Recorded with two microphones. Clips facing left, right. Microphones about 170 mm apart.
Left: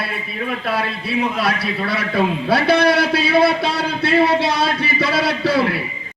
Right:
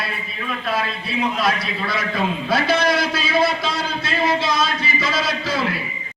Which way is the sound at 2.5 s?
65° left (ahead or behind).